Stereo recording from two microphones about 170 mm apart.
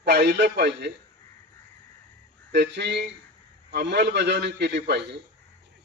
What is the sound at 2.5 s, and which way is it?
A man's voice, 90° right.